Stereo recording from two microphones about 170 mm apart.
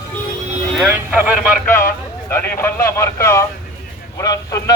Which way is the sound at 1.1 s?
10° right (ahead or behind).